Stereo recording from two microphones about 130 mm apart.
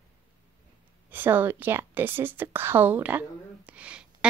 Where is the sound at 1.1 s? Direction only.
15° right (ahead or behind).